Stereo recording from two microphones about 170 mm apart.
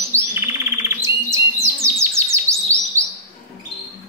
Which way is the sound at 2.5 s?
15° right (ahead or behind).